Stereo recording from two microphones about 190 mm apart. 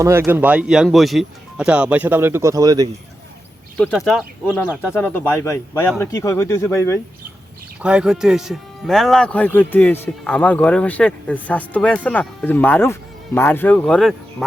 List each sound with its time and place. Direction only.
0.0 s speech: 15° right (ahead or behind)
3.8 s speech: centre (ahead or behind)
4.9 s speech: 10° left (ahead or behind)
7.8 s speech: 5° right (ahead or behind)